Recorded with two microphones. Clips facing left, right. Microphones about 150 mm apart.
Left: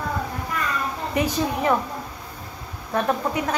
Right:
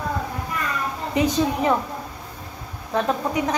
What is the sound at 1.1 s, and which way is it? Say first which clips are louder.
Speech: right 3 dB; 20° right (ahead or behind).